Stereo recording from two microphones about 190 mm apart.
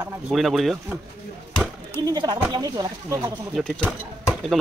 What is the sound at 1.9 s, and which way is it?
Speech, 20° right (ahead or behind).